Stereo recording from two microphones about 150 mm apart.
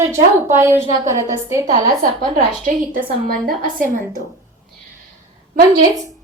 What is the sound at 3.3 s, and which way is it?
Speech, 75° right (ahead or behind).